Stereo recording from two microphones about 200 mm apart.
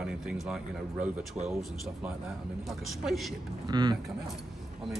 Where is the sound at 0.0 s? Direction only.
5° right (ahead or behind).